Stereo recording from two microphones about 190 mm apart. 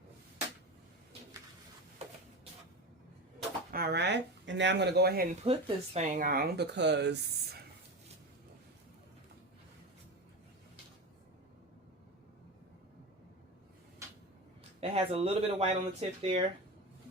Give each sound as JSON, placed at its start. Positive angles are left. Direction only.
{"t": 3.7, "sound": "speech", "side_deg": -55}
{"t": 5.4, "sound": "speech", "side_deg": -30}
{"t": 14.8, "sound": "speech", "side_deg": -30}